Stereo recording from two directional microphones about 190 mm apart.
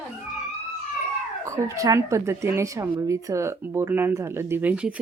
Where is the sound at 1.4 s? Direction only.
15° right (ahead or behind).